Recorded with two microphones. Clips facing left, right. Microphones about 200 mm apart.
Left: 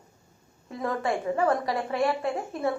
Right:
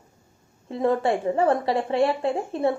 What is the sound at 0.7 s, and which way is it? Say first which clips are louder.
A woman's voice: right 6 dB; 25° right (ahead or behind).